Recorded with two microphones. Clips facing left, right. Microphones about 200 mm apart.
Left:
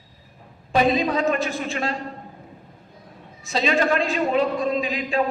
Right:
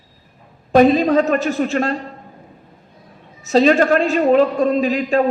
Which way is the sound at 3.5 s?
45° right (ahead or behind).